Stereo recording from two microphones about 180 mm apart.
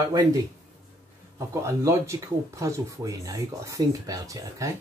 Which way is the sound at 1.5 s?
15° right (ahead or behind).